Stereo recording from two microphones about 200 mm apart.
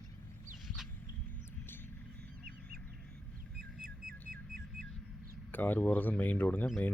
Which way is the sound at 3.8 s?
50° right (ahead or behind).